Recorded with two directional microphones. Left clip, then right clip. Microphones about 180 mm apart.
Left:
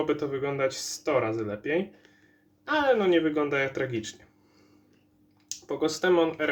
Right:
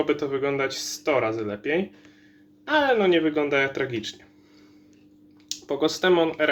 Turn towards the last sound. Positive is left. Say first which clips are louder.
# right 3 dB
turn(degrees=-15)  # may be behind; listen again after turning